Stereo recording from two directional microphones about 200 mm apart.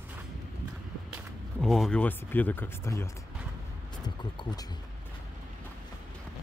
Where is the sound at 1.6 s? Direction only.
Centre (ahead or behind); by 4.6 s 20° left (ahead or behind).